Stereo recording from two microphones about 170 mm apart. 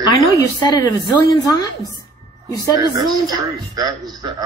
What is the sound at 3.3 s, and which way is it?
A man's voice, 20° right (ahead or behind).